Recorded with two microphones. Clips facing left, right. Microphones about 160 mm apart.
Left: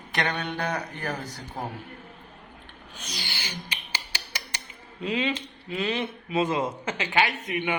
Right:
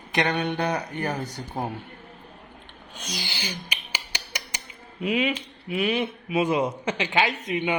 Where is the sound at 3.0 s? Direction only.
20° right (ahead or behind).